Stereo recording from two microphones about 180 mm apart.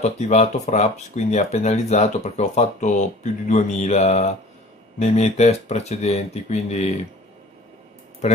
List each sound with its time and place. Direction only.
0.0 s speech: 40° left (ahead or behind)